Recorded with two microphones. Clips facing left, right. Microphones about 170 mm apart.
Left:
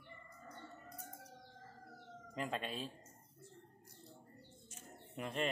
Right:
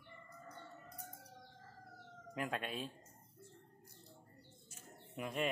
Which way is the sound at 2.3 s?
5° right (ahead or behind).